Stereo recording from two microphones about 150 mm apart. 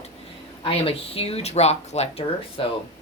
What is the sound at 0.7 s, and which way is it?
Speech, 40° left (ahead or behind).